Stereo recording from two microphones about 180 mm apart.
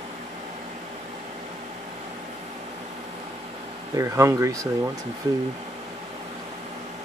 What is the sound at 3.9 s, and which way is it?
Speech, 15° right (ahead or behind).